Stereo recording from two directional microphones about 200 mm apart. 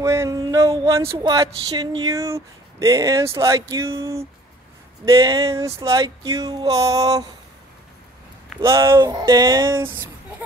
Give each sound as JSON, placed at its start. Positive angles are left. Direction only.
{"t": 0.0, "sound": "speech", "side_deg": -15}
{"t": 8.5, "sound": "speech", "side_deg": -15}